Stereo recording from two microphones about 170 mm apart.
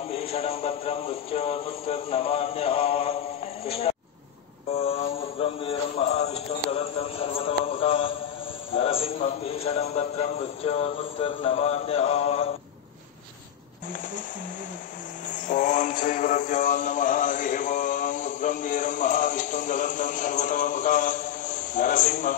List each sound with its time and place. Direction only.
0.1 s a man's voice: 35° left (ahead or behind)
4.7 s mantra: 35° left (ahead or behind)
6.7 s a man's voice: 35° left (ahead or behind)
15.4 s mantra: 50° left (ahead or behind)